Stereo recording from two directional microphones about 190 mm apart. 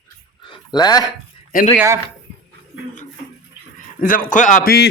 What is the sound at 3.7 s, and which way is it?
A man's voice, 45° left (ahead or behind).